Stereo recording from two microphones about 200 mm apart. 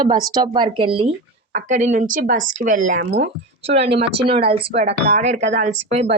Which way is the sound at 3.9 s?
30° right (ahead or behind).